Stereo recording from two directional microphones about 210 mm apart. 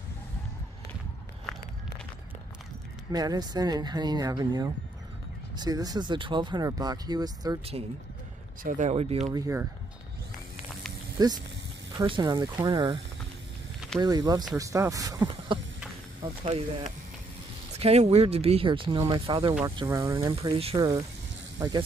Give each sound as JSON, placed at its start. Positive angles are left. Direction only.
{"t": 3.1, "sound": "speech", "side_deg": -15}
{"t": 8.6, "sound": "speech", "side_deg": -35}
{"t": 9.3, "sound": "speech", "side_deg": -15}
{"t": 11.1, "sound": "speech", "side_deg": -20}